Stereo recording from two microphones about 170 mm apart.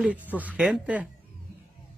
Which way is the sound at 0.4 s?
5° right (ahead or behind).